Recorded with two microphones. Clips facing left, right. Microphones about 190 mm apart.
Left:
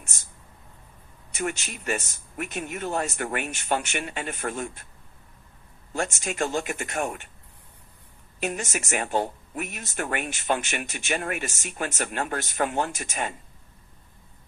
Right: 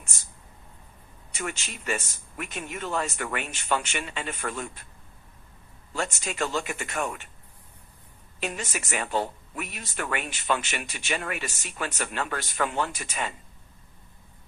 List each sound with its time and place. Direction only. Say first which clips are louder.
1.3 s speech: left 4 dB; 45° left (ahead or behind)
5.9 s speech: left 2 dB; 50° left (ahead or behind)
8.4 s speech: left 3 dB; 50° left (ahead or behind)